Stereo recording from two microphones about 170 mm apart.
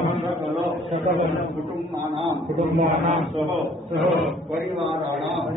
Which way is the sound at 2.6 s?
35° right (ahead or behind).